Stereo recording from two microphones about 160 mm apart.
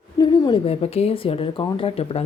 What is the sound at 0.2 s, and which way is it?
A woman's voice, 30° left (ahead or behind).